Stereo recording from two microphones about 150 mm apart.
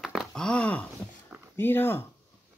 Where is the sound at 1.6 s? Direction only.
15° left (ahead or behind).